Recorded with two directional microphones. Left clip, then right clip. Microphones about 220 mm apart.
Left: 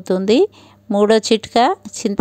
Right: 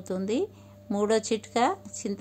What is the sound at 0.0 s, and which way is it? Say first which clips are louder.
A woman's voice: left 15 dB; 35° left (ahead or behind).